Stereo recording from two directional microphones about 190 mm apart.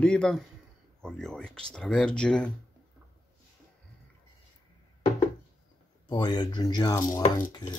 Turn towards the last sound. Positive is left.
turn(degrees=20)  # may be behind; listen again after turning